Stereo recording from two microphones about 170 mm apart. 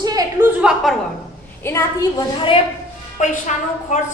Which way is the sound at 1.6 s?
20° left (ahead or behind).